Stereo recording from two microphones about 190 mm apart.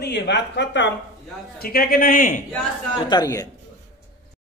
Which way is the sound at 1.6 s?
50° left (ahead or behind).